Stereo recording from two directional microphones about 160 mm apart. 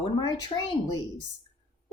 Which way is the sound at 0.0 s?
30° left (ahead or behind).